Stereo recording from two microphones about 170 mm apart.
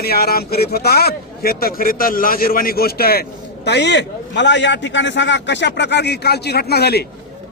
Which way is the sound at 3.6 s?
90° left.